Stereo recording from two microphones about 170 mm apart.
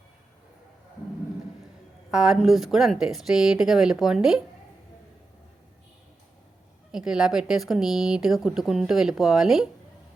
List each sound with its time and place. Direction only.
2.0 s a woman's voice: 5° right (ahead or behind)
6.9 s a woman's voice: 5° right (ahead or behind)